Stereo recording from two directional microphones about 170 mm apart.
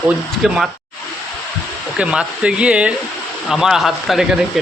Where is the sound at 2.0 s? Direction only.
5° right (ahead or behind).